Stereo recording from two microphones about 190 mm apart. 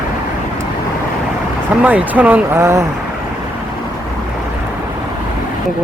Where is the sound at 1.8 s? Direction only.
10° right (ahead or behind).